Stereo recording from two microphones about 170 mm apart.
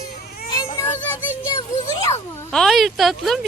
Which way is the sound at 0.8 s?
10° left (ahead or behind).